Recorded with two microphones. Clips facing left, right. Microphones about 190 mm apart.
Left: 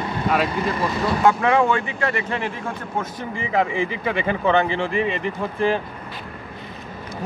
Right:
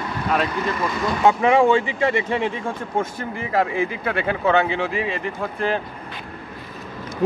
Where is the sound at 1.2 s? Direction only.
20° right (ahead or behind).